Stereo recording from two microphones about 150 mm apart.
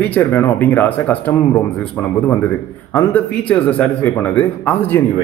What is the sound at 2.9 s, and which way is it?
A man's voice, 10° left (ahead or behind).